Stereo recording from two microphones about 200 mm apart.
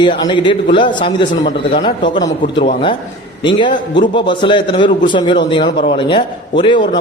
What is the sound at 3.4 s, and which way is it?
Speech, 25° left (ahead or behind).